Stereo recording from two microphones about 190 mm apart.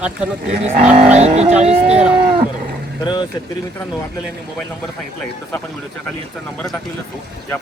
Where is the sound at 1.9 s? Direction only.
5° right (ahead or behind).